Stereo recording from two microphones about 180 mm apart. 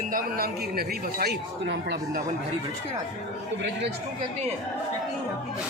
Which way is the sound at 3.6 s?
75° right (ahead or behind).